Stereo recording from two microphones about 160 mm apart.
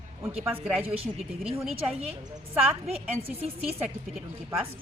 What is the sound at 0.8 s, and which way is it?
Speech, 40° right (ahead or behind).